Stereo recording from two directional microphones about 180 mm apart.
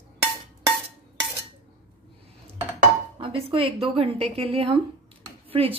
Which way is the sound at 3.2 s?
30° right (ahead or behind).